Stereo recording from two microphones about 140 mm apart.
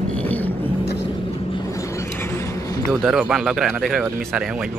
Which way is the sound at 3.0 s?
5° right (ahead or behind).